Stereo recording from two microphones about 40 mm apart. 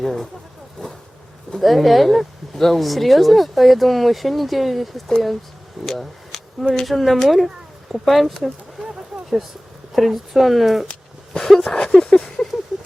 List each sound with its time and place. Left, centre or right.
0.0 s speech: centre
1.5 s speech: centre
8.8 s a sound: centre
9.9 s speech: centre
11.3 s speech: centre
11.8 s a sound: centre